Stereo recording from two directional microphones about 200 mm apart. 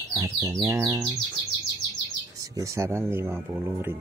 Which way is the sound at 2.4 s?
15° right (ahead or behind).